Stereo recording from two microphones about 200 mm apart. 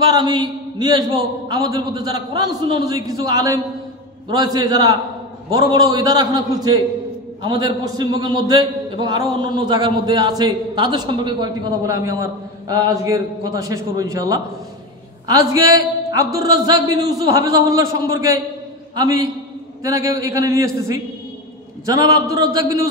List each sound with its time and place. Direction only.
0.1 s a man's voice: 20° right (ahead or behind)